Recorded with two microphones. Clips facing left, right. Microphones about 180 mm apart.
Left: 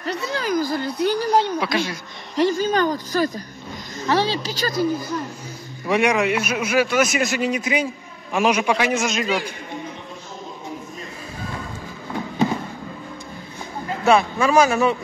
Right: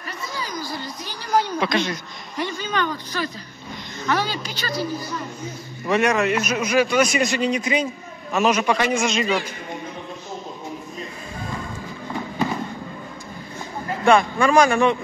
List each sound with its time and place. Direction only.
0.0 s a sound: 70° left (ahead or behind)
1.3 s speech: 25° left (ahead or behind)
1.6 s a man's voice: 5° left (ahead or behind)
2.5 s speech: 40° left (ahead or behind)
4.0 s speech: 30° left (ahead or behind); by 5.1 s 45° left (ahead or behind)
5.9 s a man's voice: 15° left (ahead or behind)
14.0 s a man's voice: 5° left (ahead or behind)